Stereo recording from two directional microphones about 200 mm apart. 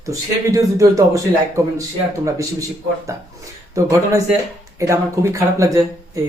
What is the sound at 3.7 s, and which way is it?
Speech, 15° right (ahead or behind).